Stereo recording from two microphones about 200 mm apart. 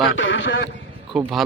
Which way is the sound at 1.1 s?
Centre (ahead or behind).